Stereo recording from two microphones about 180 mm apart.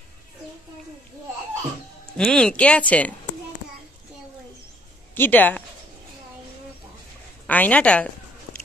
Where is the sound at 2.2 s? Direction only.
5° left (ahead or behind).